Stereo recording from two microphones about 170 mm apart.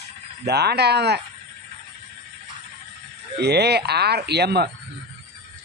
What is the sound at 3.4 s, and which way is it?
Speech, 75° right (ahead or behind).